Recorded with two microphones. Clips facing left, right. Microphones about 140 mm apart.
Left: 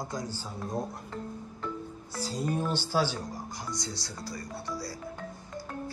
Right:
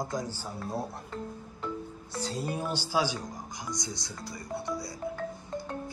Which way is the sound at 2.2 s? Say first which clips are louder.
Left 2 dB; centre (ahead or behind).